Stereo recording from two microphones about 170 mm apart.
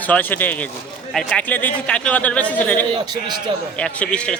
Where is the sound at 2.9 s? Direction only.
25° right (ahead or behind).